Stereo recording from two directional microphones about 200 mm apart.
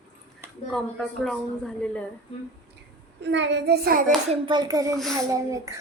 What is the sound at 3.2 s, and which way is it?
Speech, 60° right (ahead or behind).